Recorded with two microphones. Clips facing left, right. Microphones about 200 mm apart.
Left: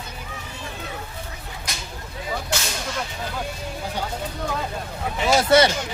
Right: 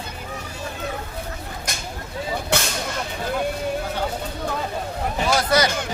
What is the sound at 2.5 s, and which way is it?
Whip, 60° right (ahead or behind).